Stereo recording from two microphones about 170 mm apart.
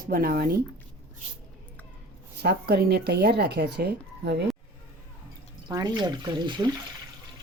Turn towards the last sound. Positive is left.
turn(degrees=-25)  # may be behind; listen again after turning